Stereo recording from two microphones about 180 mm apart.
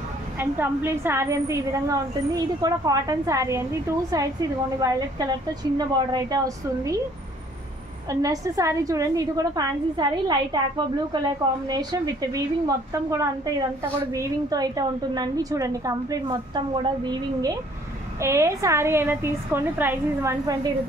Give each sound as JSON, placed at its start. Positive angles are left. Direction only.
{"t": 0.4, "sound": "a woman's voice", "side_deg": -10}
{"t": 8.1, "sound": "a woman's voice", "side_deg": -20}
{"t": 11.6, "sound": "a woman's voice", "side_deg": -20}